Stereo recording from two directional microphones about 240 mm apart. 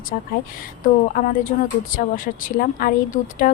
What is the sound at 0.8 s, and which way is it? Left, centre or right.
Speech, left.